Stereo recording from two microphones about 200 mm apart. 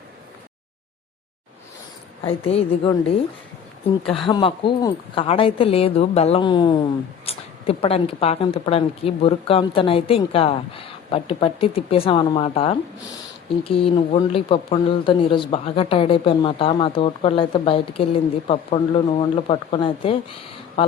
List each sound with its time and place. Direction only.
2.2 s speech: 30° left (ahead or behind)
4.3 s speech: 25° left (ahead or behind)